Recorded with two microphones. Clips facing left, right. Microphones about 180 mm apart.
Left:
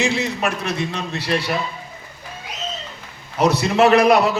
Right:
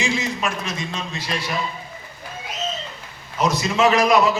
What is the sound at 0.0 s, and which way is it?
A man's voice, 65° left (ahead or behind).